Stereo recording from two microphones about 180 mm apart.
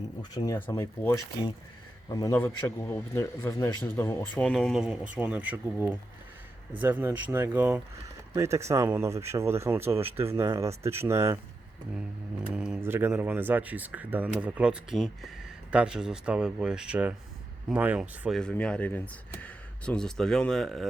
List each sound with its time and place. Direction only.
0.2 s a man's voice: 20° left (ahead or behind)
4.4 s speech: centre (ahead or behind)
6.7 s speech: 10° right (ahead or behind)
11.9 s speech: 5° right (ahead or behind)
18.3 s speech: 5° left (ahead or behind)